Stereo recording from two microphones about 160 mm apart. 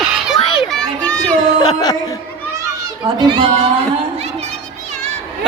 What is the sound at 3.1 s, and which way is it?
Speech, 30° right (ahead or behind).